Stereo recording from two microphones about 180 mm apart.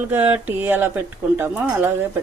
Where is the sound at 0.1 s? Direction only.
10° right (ahead or behind).